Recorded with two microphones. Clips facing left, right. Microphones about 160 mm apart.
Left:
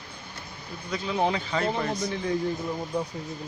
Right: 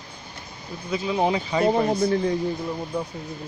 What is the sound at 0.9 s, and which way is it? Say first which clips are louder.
Speech: right 4 dB; 15° right (ahead or behind).